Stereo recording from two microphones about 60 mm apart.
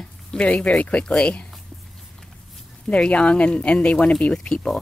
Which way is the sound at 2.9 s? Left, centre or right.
Centre.